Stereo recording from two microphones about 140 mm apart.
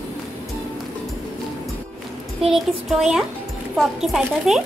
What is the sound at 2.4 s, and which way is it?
Speech, 5° right (ahead or behind).